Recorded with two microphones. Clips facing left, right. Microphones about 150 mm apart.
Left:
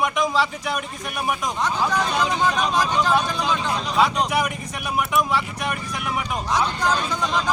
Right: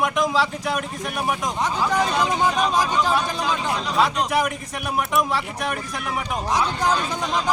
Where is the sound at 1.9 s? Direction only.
15° right (ahead or behind).